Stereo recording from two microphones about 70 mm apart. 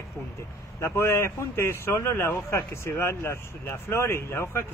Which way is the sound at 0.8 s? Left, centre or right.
Left.